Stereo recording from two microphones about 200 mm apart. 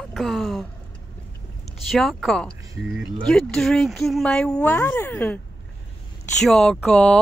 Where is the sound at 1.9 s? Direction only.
Centre (ahead or behind).